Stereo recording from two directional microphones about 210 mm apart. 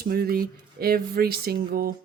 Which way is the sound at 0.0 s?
45° right (ahead or behind).